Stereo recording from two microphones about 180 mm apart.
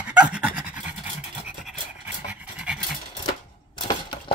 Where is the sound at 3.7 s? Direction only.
25° left (ahead or behind).